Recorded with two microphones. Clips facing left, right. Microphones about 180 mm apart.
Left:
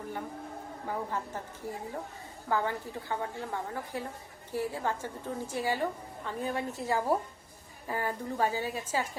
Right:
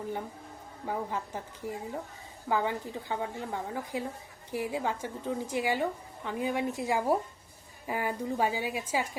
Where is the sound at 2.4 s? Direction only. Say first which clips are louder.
Right 1 dB; 15° right (ahead or behind).